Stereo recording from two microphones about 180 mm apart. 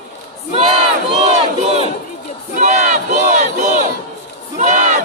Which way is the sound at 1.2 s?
35° right (ahead or behind).